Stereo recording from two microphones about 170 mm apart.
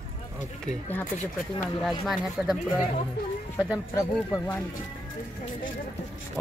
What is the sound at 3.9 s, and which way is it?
Speech, 15° left (ahead or behind).